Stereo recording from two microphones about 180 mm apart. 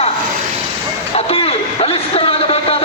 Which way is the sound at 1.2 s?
35° left (ahead or behind).